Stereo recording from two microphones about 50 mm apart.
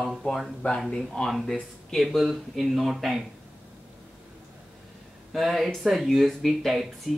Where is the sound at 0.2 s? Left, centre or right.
Left.